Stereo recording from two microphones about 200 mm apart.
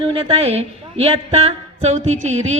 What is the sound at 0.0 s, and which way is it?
Speech, 30° right (ahead or behind).